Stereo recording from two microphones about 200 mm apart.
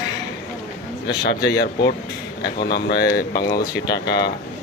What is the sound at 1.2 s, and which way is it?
Speech, 55° left (ahead or behind).